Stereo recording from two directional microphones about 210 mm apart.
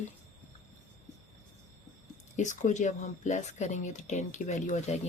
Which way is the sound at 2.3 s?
35° left (ahead or behind).